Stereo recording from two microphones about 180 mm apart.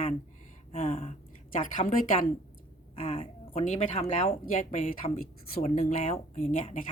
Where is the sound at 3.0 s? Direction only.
30° left (ahead or behind).